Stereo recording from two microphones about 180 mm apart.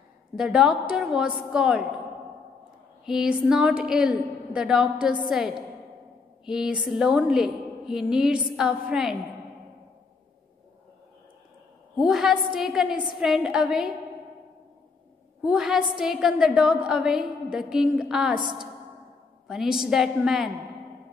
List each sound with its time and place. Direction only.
0.4 s a woman's voice: 5° right (ahead or behind)
3.1 s a woman's voice: 5° right (ahead or behind)
6.4 s a woman's voice: 5° right (ahead or behind)
12.0 s a woman's voice: centre (ahead or behind)
15.4 s a woman's voice: centre (ahead or behind)